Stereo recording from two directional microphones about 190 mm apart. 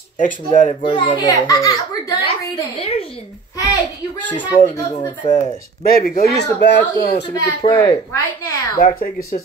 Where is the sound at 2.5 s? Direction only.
30° left (ahead or behind).